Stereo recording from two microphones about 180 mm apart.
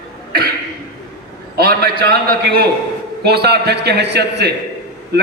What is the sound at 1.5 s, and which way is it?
A man's voice, 60° right (ahead or behind).